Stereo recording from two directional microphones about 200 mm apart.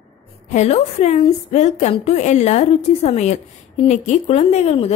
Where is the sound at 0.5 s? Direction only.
35° left (ahead or behind).